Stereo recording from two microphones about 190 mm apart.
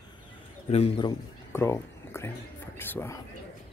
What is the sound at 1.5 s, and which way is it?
Speech, 15° left (ahead or behind).